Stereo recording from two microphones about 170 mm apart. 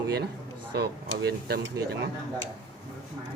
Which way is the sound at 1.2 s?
70° right (ahead or behind).